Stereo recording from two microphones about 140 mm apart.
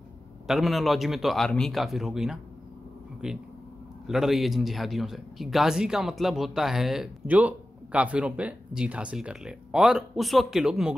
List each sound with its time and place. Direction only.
0.5 s speech: centre (ahead or behind)